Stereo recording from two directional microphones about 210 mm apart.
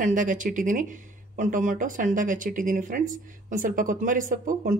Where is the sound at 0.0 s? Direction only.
40° right (ahead or behind).